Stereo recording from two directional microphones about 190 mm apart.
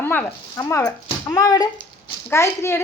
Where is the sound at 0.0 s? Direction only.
10° left (ahead or behind).